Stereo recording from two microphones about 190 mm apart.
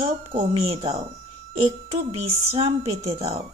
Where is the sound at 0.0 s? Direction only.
30° right (ahead or behind).